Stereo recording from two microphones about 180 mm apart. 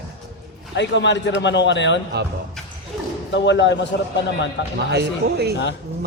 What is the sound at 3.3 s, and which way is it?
A man's voice, 80° left.